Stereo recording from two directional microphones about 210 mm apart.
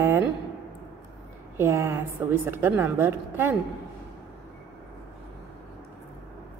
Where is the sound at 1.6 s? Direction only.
10° right (ahead or behind).